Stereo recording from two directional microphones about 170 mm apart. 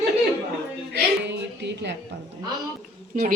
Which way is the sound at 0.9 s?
90° right.